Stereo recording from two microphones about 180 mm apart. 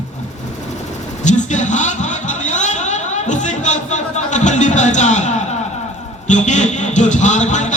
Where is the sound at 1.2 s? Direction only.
40° left (ahead or behind).